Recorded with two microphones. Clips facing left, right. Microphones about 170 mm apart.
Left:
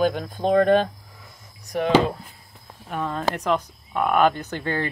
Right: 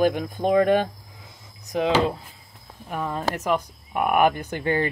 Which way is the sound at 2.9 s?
10° right (ahead or behind).